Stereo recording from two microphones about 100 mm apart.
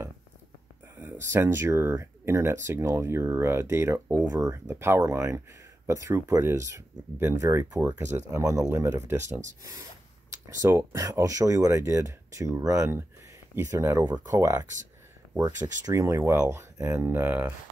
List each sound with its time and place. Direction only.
1.2 s speech: 25° right (ahead or behind)